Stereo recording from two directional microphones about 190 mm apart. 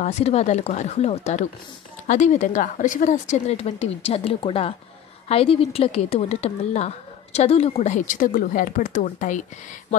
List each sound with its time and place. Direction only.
0.0 s speech: 35° left (ahead or behind)